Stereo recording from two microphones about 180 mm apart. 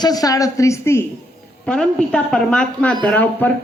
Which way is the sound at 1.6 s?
5° left (ahead or behind).